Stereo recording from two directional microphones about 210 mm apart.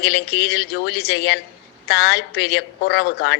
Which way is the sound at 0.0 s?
50° left (ahead or behind).